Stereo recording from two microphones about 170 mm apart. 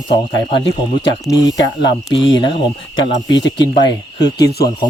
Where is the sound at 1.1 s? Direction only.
20° left (ahead or behind).